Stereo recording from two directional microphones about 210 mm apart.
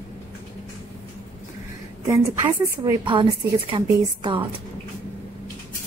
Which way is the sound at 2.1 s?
15° right (ahead or behind).